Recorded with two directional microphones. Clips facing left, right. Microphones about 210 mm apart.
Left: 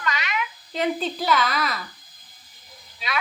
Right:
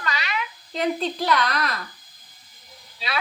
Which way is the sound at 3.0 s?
30° right (ahead or behind).